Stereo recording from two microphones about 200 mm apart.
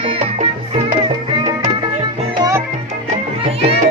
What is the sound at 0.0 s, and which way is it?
Music, 30° right (ahead or behind).